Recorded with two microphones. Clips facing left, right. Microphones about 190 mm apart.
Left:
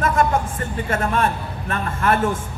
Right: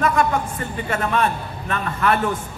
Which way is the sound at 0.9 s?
50° left (ahead or behind).